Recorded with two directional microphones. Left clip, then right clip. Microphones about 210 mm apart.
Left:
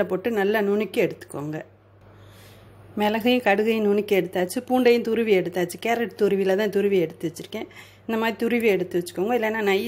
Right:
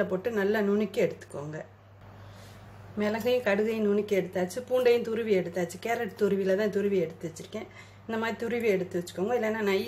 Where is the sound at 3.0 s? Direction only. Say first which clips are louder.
Left 6 dB; 40° left (ahead or behind).